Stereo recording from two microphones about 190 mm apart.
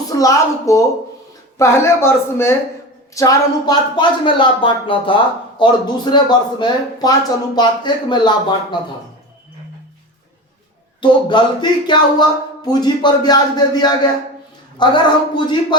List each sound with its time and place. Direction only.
0.1 s speech: 20° left (ahead or behind)
11.0 s speech: 25° left (ahead or behind)